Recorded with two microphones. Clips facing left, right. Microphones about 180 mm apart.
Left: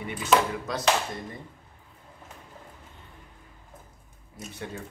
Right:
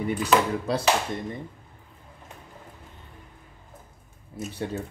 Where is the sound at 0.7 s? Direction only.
30° right (ahead or behind).